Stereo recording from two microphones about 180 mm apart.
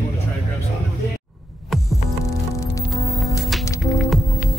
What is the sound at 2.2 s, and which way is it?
Music, 15° left (ahead or behind).